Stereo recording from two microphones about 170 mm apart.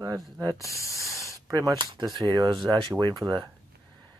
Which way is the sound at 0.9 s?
20° right (ahead or behind).